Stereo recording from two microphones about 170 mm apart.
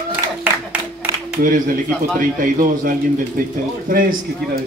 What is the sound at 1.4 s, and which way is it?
A man's voice, 55° right (ahead or behind).